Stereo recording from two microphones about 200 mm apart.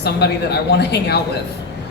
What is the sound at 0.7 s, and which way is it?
Speech, 55° left (ahead or behind).